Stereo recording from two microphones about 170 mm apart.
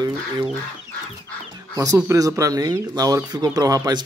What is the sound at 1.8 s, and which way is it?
Speech, 15° right (ahead or behind).